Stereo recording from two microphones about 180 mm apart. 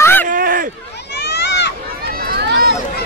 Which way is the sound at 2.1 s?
60° right (ahead or behind).